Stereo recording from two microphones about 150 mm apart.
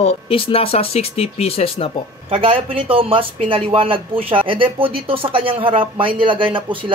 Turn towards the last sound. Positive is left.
turn(degrees=-35)  # may be behind; listen again after turning